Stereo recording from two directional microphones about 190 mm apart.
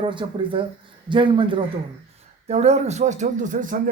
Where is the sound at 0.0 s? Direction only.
25° right (ahead or behind).